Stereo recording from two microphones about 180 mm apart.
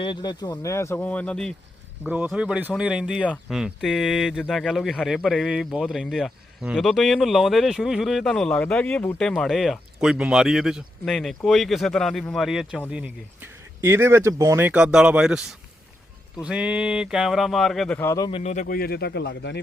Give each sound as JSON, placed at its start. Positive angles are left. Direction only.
{"t": 0.0, "sound": "speech", "side_deg": 25}
{"t": 2.0, "sound": "speech", "side_deg": -10}
{"t": 18.3, "sound": "speech", "side_deg": 30}
{"t": 18.5, "sound": "speech", "side_deg": 50}